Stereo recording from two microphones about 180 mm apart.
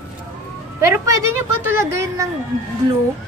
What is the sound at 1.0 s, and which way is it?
A woman's voice, 15° right (ahead or behind).